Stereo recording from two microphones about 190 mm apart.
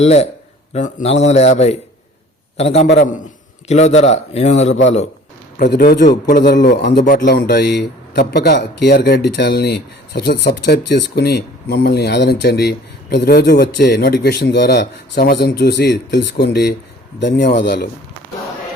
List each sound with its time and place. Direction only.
0.0 s a man's voice: 35° left (ahead or behind)
2.8 s a man's voice: 60° left (ahead or behind)
3.7 s a man's voice: 35° left (ahead or behind)
5.6 s a man's voice: 55° left (ahead or behind)